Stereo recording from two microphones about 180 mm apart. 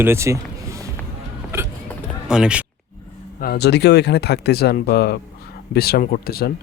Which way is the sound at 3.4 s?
65° left (ahead or behind).